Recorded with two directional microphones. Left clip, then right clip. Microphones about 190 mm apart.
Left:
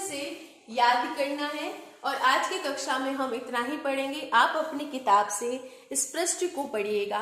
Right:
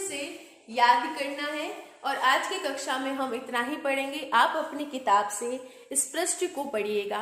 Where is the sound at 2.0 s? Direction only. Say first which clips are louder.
Even; 15° right (ahead or behind).